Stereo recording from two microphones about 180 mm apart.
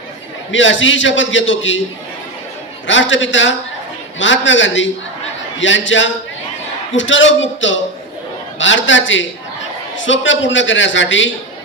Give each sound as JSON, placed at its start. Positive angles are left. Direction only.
{"t": 0.5, "sound": "a man's voice", "side_deg": 90}
{"t": 2.8, "sound": "a man's voice", "side_deg": 90}